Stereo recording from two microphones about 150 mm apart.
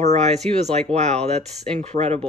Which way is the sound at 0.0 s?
50° right (ahead or behind).